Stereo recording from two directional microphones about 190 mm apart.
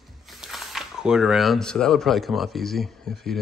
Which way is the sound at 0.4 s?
Centre (ahead or behind).